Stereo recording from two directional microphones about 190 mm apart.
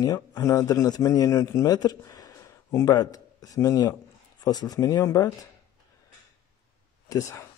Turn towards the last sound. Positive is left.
turn(degrees=15)  # may be behind; listen again after turning